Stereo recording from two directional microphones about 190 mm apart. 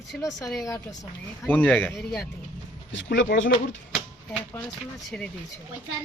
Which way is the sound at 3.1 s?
75° left (ahead or behind).